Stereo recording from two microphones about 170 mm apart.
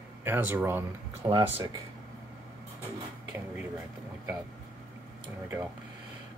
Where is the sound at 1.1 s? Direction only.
35° right (ahead or behind).